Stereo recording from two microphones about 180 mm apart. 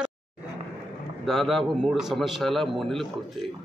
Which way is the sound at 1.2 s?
Centre (ahead or behind).